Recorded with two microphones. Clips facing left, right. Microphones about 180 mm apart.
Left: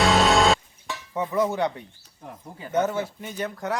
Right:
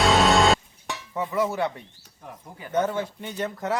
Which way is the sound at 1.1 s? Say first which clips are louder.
Left 2 dB; 20° left (ahead or behind).